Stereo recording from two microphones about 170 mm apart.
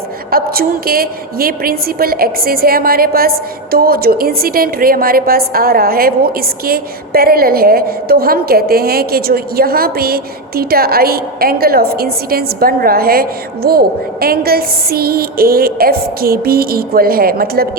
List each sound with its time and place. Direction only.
0.3 s a woman's voice: 60° right (ahead or behind)